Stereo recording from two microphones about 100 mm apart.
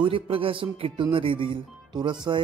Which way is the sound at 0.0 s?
65° right (ahead or behind).